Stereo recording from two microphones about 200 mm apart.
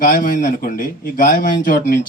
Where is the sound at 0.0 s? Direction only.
45° left (ahead or behind).